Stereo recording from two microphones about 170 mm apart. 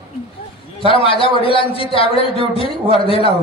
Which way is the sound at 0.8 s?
30° left (ahead or behind).